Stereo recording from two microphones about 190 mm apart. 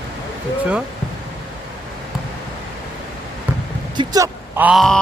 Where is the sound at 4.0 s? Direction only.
15° right (ahead or behind).